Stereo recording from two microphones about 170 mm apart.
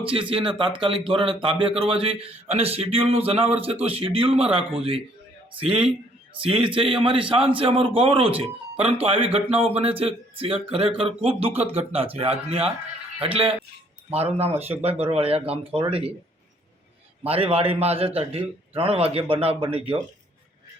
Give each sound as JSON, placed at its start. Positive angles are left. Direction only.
{"t": 0.0, "sound": "a man's voice", "side_deg": -30}
{"t": 17.2, "sound": "a man's voice", "side_deg": -35}